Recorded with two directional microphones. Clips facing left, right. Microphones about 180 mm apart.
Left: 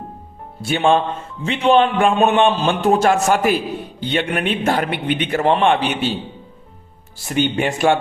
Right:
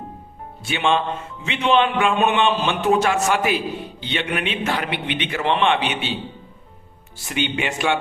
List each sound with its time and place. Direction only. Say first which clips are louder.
0.6 s a man's voice: left 5 dB; 40° left (ahead or behind)
7.3 s a man's voice: left 5 dB; 40° left (ahead or behind)